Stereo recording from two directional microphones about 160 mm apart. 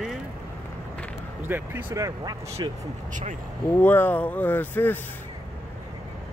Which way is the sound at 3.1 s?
50° right (ahead or behind).